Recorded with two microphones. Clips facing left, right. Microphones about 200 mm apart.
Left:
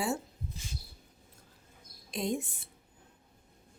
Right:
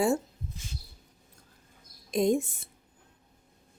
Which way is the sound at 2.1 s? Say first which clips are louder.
Right 8 dB; 45° right (ahead or behind).